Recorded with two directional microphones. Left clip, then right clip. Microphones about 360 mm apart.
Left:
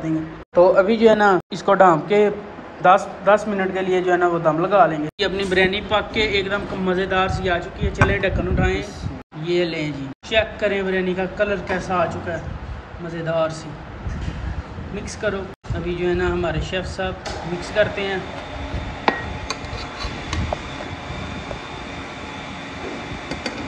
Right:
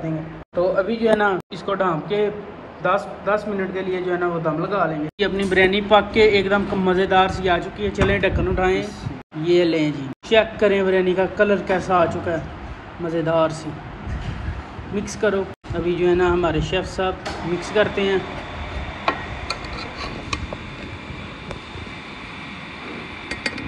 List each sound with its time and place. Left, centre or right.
0.6 s a man's voice: centre
15.9 s a man's voice: centre